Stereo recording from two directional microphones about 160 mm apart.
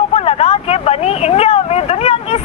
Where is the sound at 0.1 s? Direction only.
40° left (ahead or behind).